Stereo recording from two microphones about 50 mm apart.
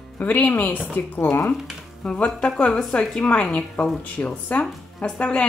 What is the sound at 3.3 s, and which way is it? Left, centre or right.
A woman's voice, left.